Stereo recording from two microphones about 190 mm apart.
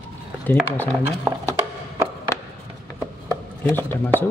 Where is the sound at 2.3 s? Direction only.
15° left (ahead or behind).